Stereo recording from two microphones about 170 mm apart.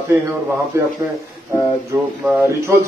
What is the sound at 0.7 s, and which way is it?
Speech, 15° right (ahead or behind).